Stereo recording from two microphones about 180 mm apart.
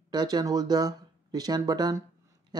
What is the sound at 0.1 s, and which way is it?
Speech, 25° right (ahead or behind).